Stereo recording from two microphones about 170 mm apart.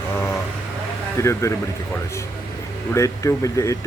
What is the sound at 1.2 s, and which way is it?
Speech, 15° left (ahead or behind).